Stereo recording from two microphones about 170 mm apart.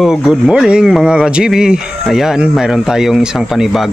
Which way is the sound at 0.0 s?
Centre (ahead or behind).